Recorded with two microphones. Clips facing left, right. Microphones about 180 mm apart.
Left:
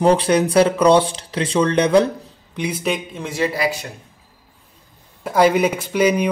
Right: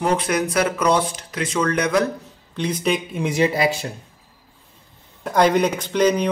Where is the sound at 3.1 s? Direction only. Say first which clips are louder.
Right 3 dB; 15° right (ahead or behind).